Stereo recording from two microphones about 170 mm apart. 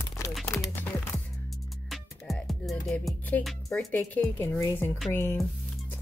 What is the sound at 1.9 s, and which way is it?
Music, centre (ahead or behind).